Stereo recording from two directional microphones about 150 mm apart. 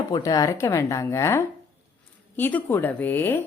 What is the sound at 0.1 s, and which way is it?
A woman's voice, 25° left (ahead or behind).